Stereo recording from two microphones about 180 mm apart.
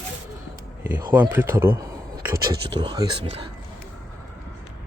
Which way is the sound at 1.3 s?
10° right (ahead or behind).